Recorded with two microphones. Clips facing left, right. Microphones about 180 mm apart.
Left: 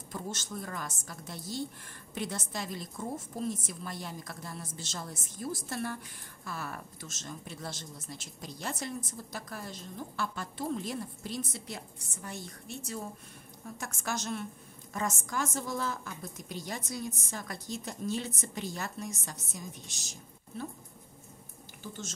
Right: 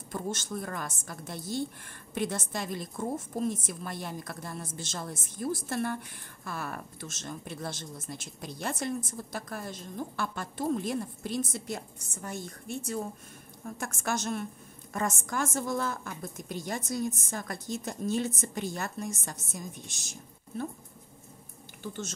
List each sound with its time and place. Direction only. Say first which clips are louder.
0.1 s a woman's voice: right 5 dB; 55° right (ahead or behind)